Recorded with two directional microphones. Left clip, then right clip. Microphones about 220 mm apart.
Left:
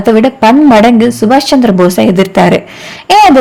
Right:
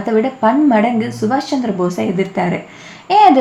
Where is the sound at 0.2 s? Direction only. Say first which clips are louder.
Left 4 dB; 45° left (ahead or behind).